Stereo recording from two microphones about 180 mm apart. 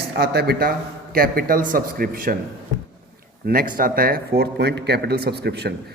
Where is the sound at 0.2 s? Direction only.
60° right (ahead or behind).